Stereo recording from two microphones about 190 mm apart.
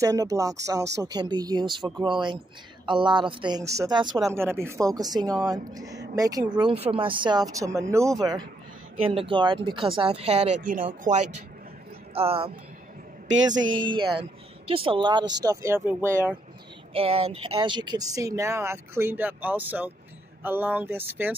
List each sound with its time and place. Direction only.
0.0 s speech: 15° right (ahead or behind)
6.6 s speech: 30° right (ahead or behind); by 10.9 s 45° right (ahead or behind)
12.1 s speech: 30° right (ahead or behind)
13.6 s a sound: 90° right
13.8 s speech: 25° right (ahead or behind); by 16.3 s 10° right (ahead or behind)
16.9 s speech: 30° right (ahead or behind); by 21.4 s 10° right (ahead or behind)